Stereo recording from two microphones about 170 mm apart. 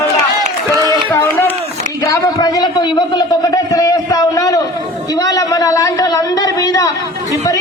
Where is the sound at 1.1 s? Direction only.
10° left (ahead or behind).